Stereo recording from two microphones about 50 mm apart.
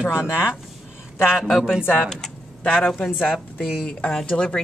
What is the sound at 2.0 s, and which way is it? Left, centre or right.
Speech, centre.